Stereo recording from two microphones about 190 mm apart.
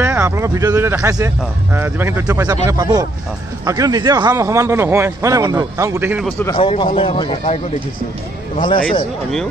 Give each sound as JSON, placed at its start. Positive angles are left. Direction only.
{"t": 0.0, "sound": "speech", "side_deg": -10}
{"t": 6.5, "sound": "speech", "side_deg": 25}